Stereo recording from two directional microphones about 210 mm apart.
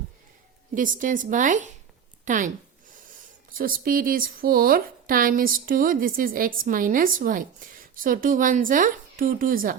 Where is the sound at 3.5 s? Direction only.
40° right (ahead or behind).